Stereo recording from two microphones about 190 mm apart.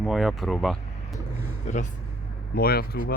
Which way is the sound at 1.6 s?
40° left (ahead or behind).